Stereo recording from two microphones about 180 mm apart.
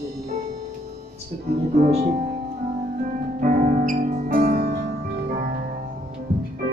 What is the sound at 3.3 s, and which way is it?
Music, 50° right (ahead or behind).